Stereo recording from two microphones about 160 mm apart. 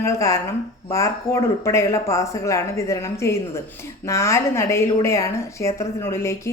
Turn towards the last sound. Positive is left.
turn(degrees=15)  # may be behind; listen again after turning